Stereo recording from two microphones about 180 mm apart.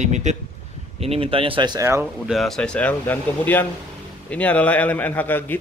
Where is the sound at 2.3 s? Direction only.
Centre (ahead or behind).